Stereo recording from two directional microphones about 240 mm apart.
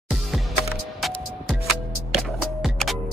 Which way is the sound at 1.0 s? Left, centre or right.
Centre.